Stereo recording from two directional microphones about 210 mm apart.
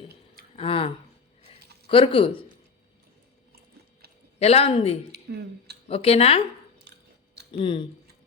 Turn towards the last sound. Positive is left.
turn(degrees=25)  # may be behind; listen again after turning